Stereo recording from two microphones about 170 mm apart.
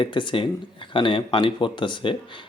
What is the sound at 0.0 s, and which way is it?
Speech, 30° left (ahead or behind).